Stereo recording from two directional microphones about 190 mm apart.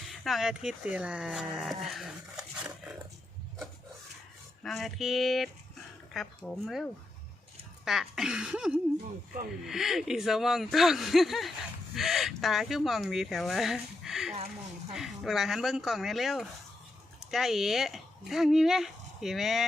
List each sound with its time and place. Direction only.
0.1 s speech: centre (ahead or behind)
4.6 s speech: centre (ahead or behind)